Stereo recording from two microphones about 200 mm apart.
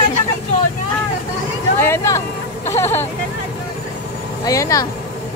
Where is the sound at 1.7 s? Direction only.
10° left (ahead or behind).